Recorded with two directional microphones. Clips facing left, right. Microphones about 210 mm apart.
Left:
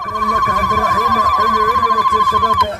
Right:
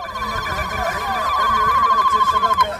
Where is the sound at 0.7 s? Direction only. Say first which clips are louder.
Left 4 dB; 30° right (ahead or behind).